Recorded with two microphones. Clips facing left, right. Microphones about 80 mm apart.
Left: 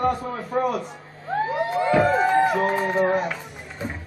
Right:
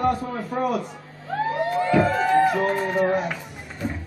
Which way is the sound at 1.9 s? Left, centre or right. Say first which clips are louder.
Left 1 dB; centre.